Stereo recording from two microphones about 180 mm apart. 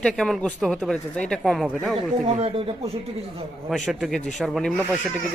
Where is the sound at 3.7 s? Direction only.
Centre (ahead or behind).